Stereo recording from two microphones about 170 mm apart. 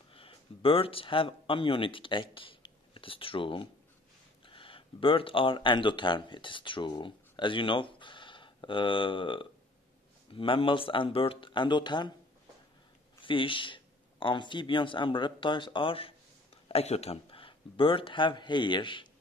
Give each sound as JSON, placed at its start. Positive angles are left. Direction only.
{"t": 0.1, "sound": "speech", "side_deg": 35}
{"t": 13.2, "sound": "speech", "side_deg": 30}